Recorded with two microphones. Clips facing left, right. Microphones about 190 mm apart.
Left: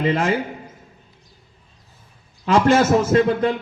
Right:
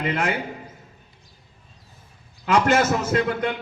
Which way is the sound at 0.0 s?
30° left (ahead or behind).